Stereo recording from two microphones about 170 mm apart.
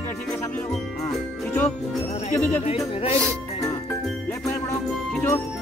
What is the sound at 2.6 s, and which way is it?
Music, 35° left (ahead or behind).